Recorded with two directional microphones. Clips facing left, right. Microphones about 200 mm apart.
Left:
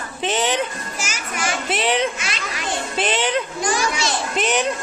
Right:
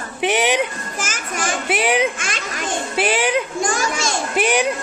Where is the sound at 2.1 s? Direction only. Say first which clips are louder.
Right 2 dB; 50° right (ahead or behind).